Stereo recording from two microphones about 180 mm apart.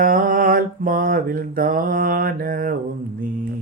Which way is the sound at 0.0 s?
50° right (ahead or behind).